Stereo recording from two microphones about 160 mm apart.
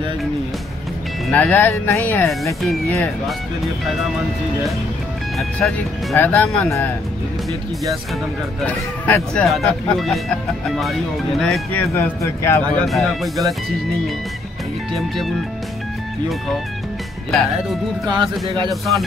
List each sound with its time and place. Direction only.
1.3 s speech: 10° left (ahead or behind)
3.3 s speech: centre (ahead or behind)
5.4 s speech: 5° left (ahead or behind)
8.5 s speech: 10° left (ahead or behind)
11.7 s speech: 15° left (ahead or behind)
12.7 s speech: centre (ahead or behind)
15.0 s speech: centre (ahead or behind)
18.0 s speech: 30° right (ahead or behind)
18.7 s speech: centre (ahead or behind)